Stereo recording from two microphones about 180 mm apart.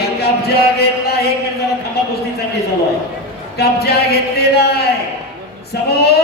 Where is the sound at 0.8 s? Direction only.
60° left (ahead or behind).